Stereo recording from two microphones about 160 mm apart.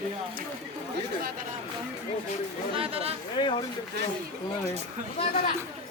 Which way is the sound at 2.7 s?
35° right (ahead or behind).